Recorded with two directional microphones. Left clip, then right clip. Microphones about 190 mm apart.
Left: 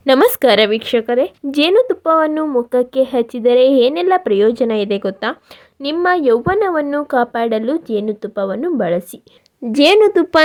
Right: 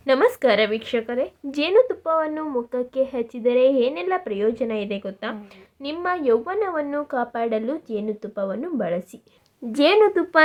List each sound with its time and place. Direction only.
0.0 s a woman's voice: 50° left (ahead or behind)